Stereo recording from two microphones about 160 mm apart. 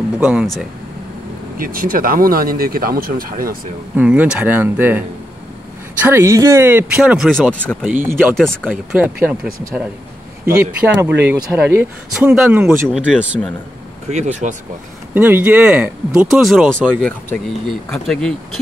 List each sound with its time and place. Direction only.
0.2 s speech: 5° right (ahead or behind)
1.6 s speech: 60° right (ahead or behind)
3.9 s speech: 10° right (ahead or behind)
7.0 s speech: 5° right (ahead or behind)
7.8 s speech: 10° right (ahead or behind)
8.4 s speech: 5° left (ahead or behind)
8.6 s speech: 10° right (ahead or behind)
14.0 s speech: 45° right (ahead or behind)
15.1 s speech: 10° right (ahead or behind)